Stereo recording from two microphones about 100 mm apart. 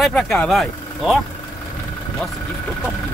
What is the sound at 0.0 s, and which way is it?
Speech, 5° left (ahead or behind).